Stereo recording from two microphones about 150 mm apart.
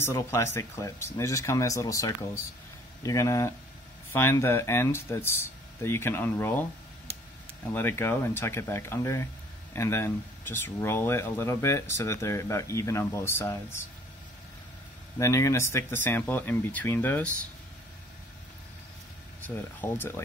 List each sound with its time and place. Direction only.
0.0 s speech: 20° left (ahead or behind)
7.7 s speech: 15° left (ahead or behind)
15.1 s speech: 20° left (ahead or behind)
19.4 s speech: 15° left (ahead or behind)